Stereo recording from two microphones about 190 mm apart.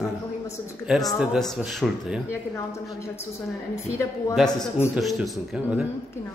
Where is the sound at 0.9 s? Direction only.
Centre (ahead or behind).